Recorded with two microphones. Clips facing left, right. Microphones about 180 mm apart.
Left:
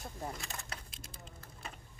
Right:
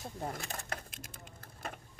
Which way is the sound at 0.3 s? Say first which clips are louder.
Right 4 dB; 55° right (ahead or behind).